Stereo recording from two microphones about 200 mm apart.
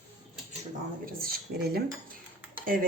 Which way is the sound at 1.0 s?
45° right (ahead or behind).